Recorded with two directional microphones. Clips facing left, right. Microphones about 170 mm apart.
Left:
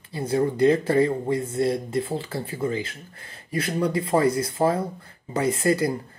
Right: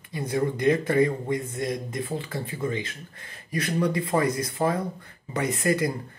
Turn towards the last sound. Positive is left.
turn(degrees=30)  # may be behind; listen again after turning